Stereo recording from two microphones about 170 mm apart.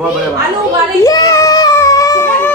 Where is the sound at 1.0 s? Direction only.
20° left (ahead or behind).